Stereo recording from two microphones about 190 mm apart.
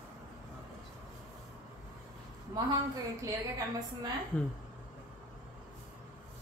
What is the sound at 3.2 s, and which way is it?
Speech, 15° right (ahead or behind).